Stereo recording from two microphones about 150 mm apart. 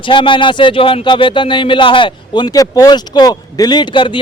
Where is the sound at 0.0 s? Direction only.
35° left (ahead or behind).